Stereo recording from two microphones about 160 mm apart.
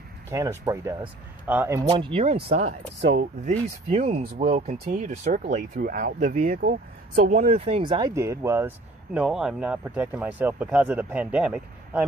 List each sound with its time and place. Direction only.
0.3 s speech: 20° right (ahead or behind)
1.9 s speech: 30° right (ahead or behind)
3.0 s speech: 90° right
3.4 s speech: 50° right (ahead or behind)
7.2 s speech: 50° right (ahead or behind); by 8.1 s 30° right (ahead or behind)
8.1 s speech: 15° right (ahead or behind)
9.2 s speech: 5° right (ahead or behind)